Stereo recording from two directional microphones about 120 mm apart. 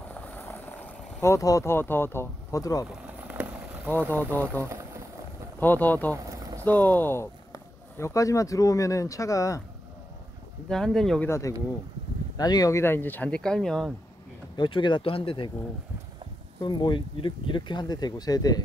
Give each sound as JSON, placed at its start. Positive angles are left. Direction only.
{"t": 0.1, "sound": "vehicle", "side_deg": 15}
{"t": 1.2, "sound": "speech", "side_deg": 25}
{"t": 3.3, "sound": "vehicle", "side_deg": -10}
{"t": 4.6, "sound": "speech", "side_deg": -25}
{"t": 5.6, "sound": "speech", "side_deg": 15}
{"t": 6.2, "sound": "vehicle", "side_deg": -25}
{"t": 6.6, "sound": "speech", "side_deg": 15}
{"t": 10.7, "sound": "speech", "side_deg": 5}
{"t": 11.2, "sound": "speech", "side_deg": 25}
{"t": 14.6, "sound": "speech", "side_deg": 40}
{"t": 16.6, "sound": "speech", "side_deg": 40}